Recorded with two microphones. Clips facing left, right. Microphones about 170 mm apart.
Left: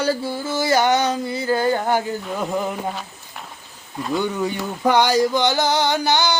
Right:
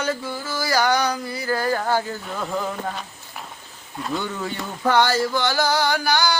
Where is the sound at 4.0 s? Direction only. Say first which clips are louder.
Left 5 dB; 10° left (ahead or behind).